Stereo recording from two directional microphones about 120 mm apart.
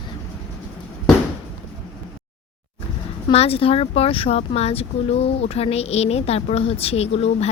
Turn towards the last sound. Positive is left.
turn(degrees=60)  # may be behind; listen again after turning